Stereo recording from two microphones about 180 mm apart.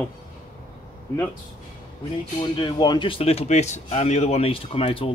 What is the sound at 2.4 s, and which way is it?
Speech, 25° left (ahead or behind).